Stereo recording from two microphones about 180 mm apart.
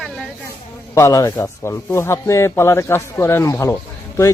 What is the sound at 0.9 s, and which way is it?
A man's voice, 15° left (ahead or behind).